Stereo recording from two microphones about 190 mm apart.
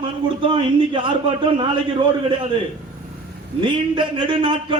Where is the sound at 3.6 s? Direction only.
25° right (ahead or behind).